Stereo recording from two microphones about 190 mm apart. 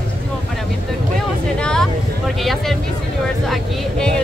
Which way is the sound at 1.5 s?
5° left (ahead or behind).